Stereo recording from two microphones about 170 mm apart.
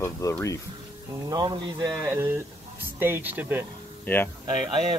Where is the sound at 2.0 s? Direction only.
15° right (ahead or behind).